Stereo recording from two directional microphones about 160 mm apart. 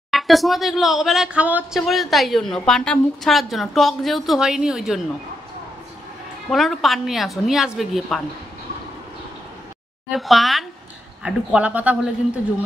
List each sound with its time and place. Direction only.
0.1 s speech: centre (ahead or behind)
6.5 s speech: centre (ahead or behind)
10.0 s speech: centre (ahead or behind)